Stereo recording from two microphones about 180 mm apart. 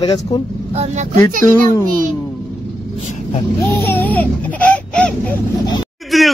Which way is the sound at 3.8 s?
10° left (ahead or behind).